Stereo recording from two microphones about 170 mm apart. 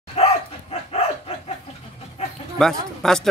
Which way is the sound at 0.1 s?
40° left (ahead or behind).